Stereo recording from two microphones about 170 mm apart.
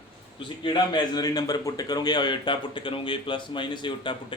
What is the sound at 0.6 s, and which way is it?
A man's voice, 25° left (ahead or behind).